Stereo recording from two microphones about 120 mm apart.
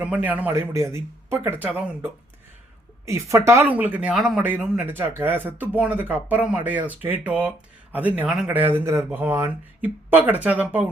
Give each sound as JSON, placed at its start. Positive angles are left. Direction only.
{"t": 0.0, "sound": "speech", "side_deg": -15}
{"t": 3.1, "sound": "speech", "side_deg": -25}